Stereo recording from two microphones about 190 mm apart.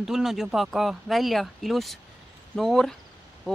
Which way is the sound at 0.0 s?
Centre (ahead or behind).